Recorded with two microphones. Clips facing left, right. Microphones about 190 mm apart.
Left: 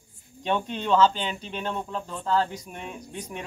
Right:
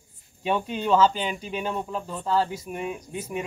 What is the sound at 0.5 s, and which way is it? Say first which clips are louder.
A man's voice: right 1 dB; 5° right (ahead or behind).